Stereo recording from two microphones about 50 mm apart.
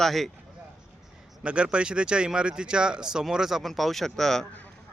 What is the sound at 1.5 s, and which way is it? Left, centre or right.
Speech, right.